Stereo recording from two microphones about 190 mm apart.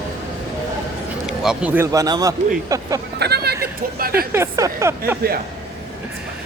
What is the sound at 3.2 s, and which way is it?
Speech, 60° right (ahead or behind).